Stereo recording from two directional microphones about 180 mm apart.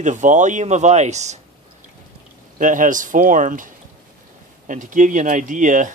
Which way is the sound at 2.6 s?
45° right (ahead or behind).